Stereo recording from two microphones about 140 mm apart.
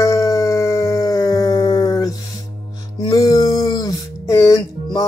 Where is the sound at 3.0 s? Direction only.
25° left (ahead or behind).